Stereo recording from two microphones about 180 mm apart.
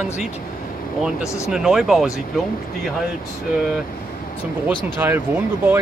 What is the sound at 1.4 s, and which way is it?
Speech, centre (ahead or behind).